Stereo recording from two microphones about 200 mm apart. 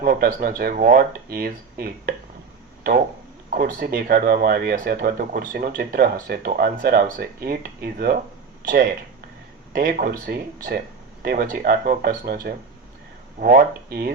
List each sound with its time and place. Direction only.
0.0 s speech: 50° right (ahead or behind)
3.5 s speech: 45° right (ahead or behind)
9.7 s speech: 45° right (ahead or behind)